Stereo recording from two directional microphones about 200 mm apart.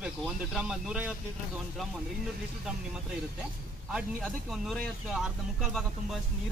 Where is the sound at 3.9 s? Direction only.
Centre (ahead or behind).